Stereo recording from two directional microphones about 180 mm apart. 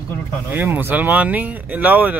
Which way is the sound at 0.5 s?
10° right (ahead or behind).